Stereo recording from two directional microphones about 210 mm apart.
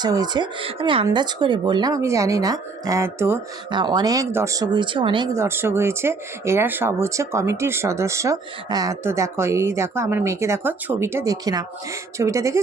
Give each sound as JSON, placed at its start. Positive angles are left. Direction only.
{"t": 0.0, "sound": "speech", "side_deg": -20}